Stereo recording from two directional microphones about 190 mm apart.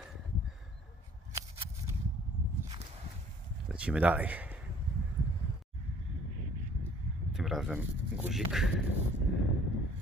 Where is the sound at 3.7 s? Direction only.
5° right (ahead or behind).